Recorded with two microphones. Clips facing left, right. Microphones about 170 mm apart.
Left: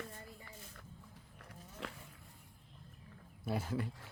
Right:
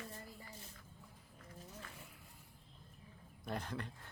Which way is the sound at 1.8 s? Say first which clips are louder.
Left 9 dB; 80° left.